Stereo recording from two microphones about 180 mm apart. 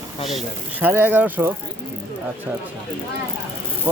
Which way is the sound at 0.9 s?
10° right (ahead or behind).